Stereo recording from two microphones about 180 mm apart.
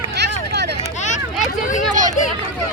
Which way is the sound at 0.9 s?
40° left (ahead or behind).